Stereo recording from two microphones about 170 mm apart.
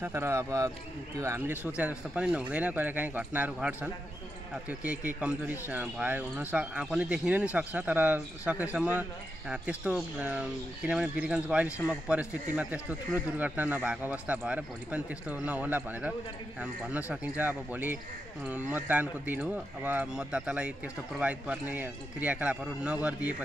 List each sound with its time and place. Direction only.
0.0 s speech: 15° right (ahead or behind)